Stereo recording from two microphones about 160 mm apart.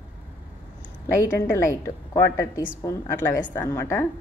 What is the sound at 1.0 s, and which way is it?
A woman's voice, 15° left (ahead or behind).